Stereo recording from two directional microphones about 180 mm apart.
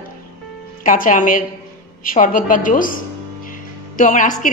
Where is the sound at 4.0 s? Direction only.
45° left (ahead or behind).